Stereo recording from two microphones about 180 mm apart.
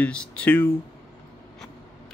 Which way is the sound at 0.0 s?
5° left (ahead or behind).